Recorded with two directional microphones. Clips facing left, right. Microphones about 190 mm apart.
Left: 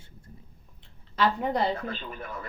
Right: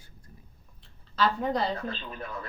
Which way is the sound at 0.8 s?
20° left (ahead or behind).